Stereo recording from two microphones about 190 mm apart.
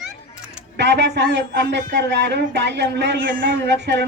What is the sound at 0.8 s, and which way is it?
Speech, 65° right (ahead or behind).